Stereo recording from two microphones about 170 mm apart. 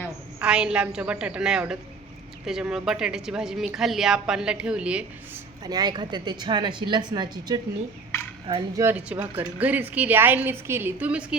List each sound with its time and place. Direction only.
0.3 s a woman's voice: 5° right (ahead or behind)
5.6 s a woman's voice: 25° right (ahead or behind); by 11.3 s 5° right (ahead or behind)